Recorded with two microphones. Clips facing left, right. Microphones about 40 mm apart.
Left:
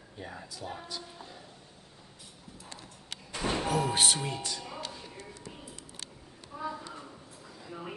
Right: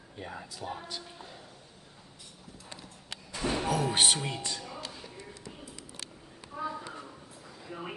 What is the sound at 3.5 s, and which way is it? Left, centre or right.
Music, centre.